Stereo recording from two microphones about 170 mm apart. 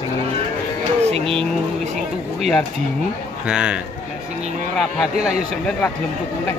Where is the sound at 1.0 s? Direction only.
35° right (ahead or behind).